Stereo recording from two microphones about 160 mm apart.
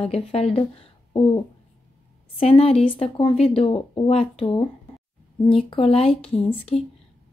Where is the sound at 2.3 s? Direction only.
35° left (ahead or behind).